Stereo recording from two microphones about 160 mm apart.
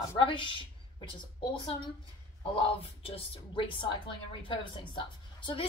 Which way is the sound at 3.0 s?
35° left (ahead or behind).